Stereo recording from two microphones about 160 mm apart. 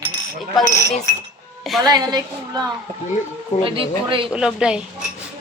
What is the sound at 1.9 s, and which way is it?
A woman's voice, 25° right (ahead or behind).